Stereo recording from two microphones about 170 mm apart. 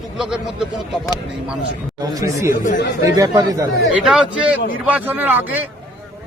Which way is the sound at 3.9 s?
5° right (ahead or behind).